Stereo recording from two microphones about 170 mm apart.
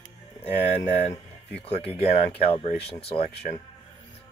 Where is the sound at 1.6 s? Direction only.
35° left (ahead or behind).